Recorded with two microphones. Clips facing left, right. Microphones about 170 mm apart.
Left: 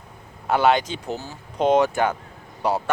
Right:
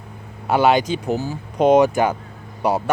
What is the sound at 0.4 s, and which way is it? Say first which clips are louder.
Speech: right 3 dB; 10° right (ahead or behind).